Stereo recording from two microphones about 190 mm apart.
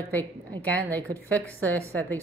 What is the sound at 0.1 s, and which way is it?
A woman's voice, 10° left (ahead or behind).